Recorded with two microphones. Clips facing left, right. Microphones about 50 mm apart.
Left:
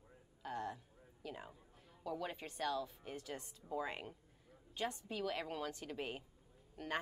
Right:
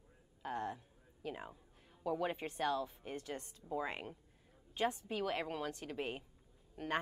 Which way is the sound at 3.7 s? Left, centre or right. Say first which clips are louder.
Right 2 dB; centre.